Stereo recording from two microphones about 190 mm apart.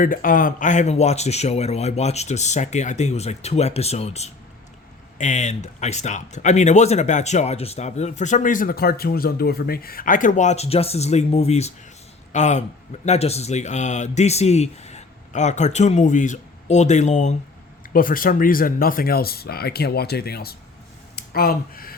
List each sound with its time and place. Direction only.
0.0 s speech: 45° left (ahead or behind)
17.8 s speech: 45° left (ahead or behind)